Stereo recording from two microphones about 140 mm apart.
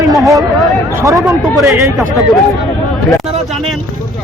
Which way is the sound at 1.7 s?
Centre (ahead or behind).